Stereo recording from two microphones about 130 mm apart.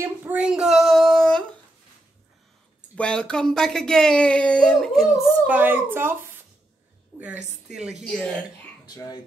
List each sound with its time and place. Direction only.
0.0 s a sound: 15° right (ahead or behind); by 1.4 s 5° left (ahead or behind)
3.0 s speech: 5° left (ahead or behind)
5.5 s speech: 15° right (ahead or behind)
7.1 s a sound: 30° right (ahead or behind)
7.6 s speech: 5° right (ahead or behind)
8.8 s speech: 30° left (ahead or behind)